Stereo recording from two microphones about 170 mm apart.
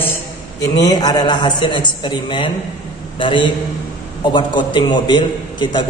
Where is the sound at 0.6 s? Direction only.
20° left (ahead or behind).